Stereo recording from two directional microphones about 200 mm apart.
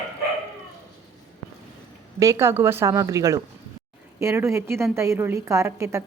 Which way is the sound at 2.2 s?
15° right (ahead or behind).